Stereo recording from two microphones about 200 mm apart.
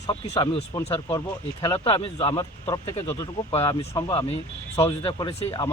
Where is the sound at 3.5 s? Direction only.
30° left (ahead or behind).